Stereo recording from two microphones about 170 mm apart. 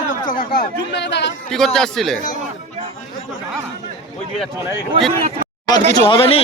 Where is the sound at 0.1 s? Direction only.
55° left (ahead or behind); by 1.4 s 90° left.